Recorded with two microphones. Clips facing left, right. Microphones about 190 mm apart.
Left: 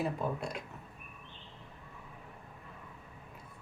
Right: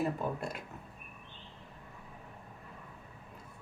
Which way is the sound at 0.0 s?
Centre (ahead or behind).